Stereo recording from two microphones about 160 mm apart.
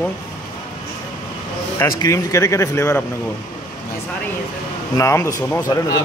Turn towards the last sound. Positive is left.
turn(degrees=20)  # may be behind; listen again after turning